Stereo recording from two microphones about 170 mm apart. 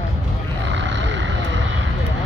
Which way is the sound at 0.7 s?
90° right.